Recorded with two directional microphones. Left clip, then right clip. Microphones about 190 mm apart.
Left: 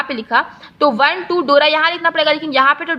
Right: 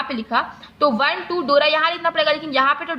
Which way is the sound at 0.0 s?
30° left (ahead or behind).